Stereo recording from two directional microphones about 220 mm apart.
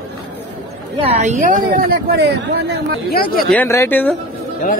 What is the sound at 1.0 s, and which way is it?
Speech, 30° right (ahead or behind).